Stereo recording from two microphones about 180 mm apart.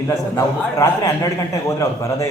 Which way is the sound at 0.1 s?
15° left (ahead or behind).